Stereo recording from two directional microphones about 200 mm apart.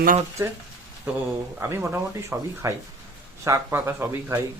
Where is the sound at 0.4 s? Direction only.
15° right (ahead or behind).